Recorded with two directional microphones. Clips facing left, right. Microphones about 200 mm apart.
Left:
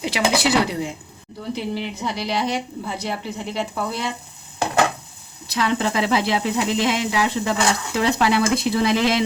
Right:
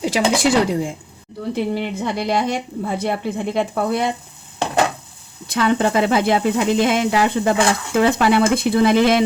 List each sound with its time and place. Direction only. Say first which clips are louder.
0.0 s a woman's voice: right 3 dB; 45° right (ahead or behind)
5.5 s a woman's voice: right 4 dB; 50° right (ahead or behind)